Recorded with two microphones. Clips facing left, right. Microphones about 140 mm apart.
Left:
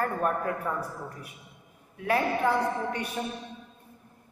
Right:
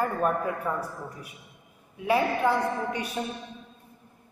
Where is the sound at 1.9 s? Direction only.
10° right (ahead or behind).